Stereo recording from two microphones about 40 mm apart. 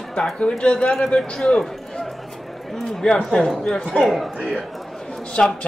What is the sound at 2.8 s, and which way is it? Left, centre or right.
Speech, centre.